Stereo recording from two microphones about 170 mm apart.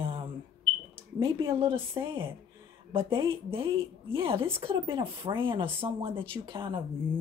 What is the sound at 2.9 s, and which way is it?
Speech, 30° right (ahead or behind).